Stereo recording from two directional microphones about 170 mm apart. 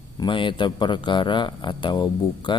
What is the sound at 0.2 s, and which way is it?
Speech, 30° left (ahead or behind).